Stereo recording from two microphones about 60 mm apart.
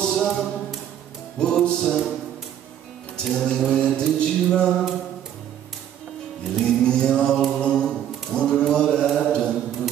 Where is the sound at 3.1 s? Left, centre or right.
Centre.